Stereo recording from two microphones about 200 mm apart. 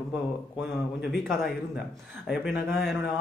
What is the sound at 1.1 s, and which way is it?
A man's voice, centre (ahead or behind).